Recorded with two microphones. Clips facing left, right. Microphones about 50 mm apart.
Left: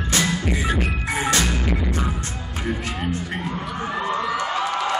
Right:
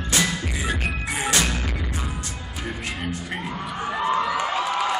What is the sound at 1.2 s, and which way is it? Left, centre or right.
Music, left.